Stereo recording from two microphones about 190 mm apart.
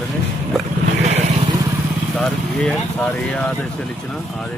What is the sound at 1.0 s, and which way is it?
Vehicle, 35° right (ahead or behind).